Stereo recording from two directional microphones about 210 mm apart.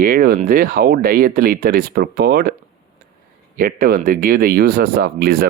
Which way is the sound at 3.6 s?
40° right (ahead or behind).